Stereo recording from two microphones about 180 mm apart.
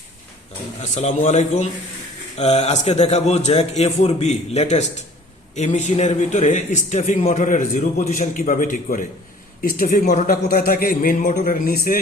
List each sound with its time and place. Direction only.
0.8 s a man's voice: 40° left (ahead or behind)